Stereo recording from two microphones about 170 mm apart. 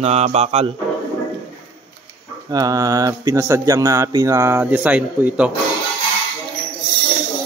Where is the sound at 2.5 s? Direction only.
20° right (ahead or behind).